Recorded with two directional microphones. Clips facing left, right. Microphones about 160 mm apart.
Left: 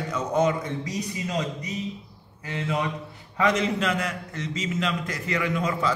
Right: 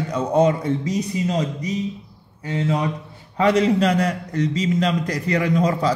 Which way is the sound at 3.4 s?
35° right (ahead or behind).